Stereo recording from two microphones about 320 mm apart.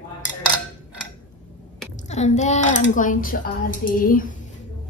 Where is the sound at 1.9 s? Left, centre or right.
Left.